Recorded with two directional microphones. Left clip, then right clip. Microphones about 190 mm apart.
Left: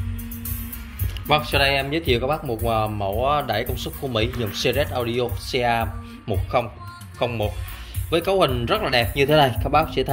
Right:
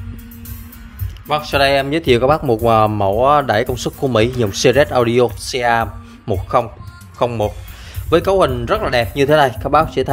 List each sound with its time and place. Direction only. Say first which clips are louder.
1.2 s speech: right 4 dB; 25° right (ahead or behind)